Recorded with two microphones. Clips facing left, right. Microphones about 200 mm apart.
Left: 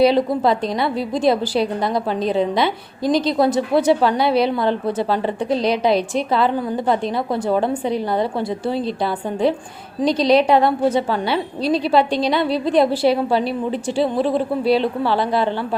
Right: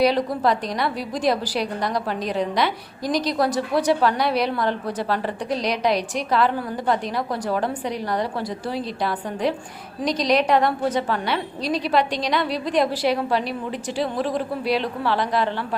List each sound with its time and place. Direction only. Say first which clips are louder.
0.0 s a woman's voice: left 4 dB; 25° left (ahead or behind)